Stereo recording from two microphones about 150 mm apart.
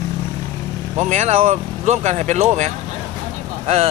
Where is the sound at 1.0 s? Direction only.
50° right (ahead or behind).